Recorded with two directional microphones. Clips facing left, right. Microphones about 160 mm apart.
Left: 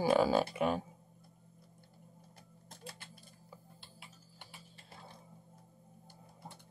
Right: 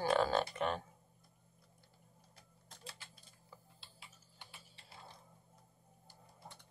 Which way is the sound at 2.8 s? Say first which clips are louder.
Left 4 dB; 55° left (ahead or behind).